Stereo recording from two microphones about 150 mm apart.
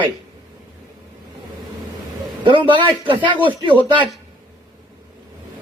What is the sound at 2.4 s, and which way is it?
Speech, 35° right (ahead or behind).